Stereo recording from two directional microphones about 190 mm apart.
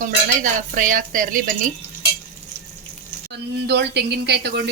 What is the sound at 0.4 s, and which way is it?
Speech, 45° right (ahead or behind).